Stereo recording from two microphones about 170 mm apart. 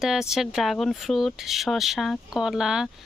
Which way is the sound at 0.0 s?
Centre (ahead or behind).